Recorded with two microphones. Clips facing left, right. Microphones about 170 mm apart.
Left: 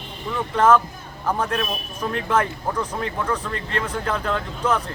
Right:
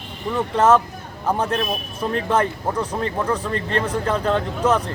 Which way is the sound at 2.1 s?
35° right (ahead or behind).